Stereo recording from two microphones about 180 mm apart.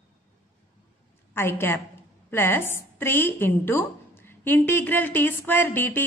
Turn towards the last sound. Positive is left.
turn(degrees=10)  # may be behind; listen again after turning